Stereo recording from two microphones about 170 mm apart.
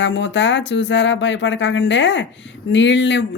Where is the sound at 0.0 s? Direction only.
90° left.